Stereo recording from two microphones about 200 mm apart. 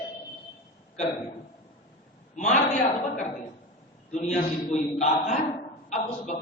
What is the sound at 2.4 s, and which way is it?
Speech, 35° left (ahead or behind).